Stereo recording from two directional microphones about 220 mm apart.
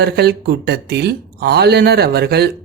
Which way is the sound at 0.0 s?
45° right (ahead or behind).